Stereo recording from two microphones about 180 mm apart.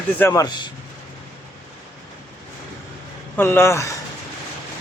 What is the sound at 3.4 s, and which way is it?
Speech, 10° left (ahead or behind).